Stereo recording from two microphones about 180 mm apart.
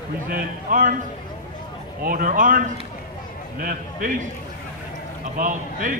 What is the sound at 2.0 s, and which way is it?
Speech, 50° right (ahead or behind).